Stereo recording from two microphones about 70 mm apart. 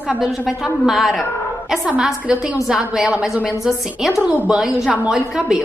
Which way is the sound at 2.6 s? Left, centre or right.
Centre.